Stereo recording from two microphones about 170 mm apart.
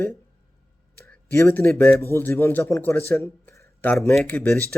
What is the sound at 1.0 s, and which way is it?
A man's voice, 15° left (ahead or behind).